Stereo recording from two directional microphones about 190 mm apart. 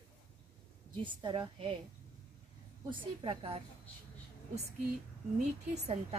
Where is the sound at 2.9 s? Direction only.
30° right (ahead or behind).